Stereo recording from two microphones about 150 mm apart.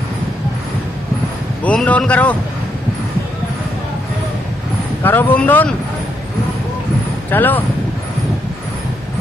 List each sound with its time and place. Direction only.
1.6 s a man's voice: 10° left (ahead or behind)
5.0 s a man's voice: 15° left (ahead or behind)
7.2 s a man's voice: 10° left (ahead or behind)